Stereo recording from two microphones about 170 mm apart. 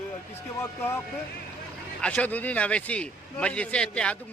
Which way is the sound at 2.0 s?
5° left (ahead or behind).